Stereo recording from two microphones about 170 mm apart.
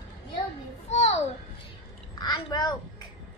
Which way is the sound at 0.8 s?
40° left (ahead or behind).